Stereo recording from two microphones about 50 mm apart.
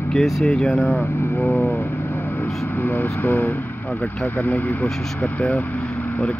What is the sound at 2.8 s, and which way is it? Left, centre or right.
Speech, left.